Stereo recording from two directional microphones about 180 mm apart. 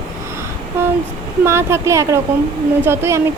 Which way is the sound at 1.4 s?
15° right (ahead or behind).